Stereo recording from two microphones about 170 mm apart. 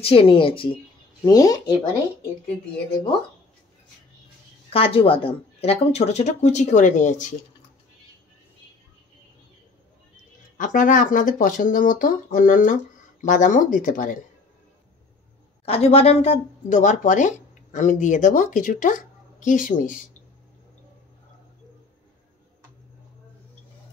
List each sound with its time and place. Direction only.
0.0 s speech: 35° left (ahead or behind)
4.6 s speech: 35° left (ahead or behind)
10.6 s speech: 50° left (ahead or behind)
15.6 s speech: 35° left (ahead or behind)